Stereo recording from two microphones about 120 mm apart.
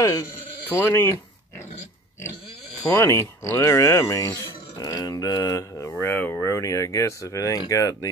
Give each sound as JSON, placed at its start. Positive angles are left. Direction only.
{"t": 0.0, "sound": "speech", "side_deg": 25}
{"t": 0.7, "sound": "speech", "side_deg": 15}
{"t": 2.9, "sound": "speech", "side_deg": 25}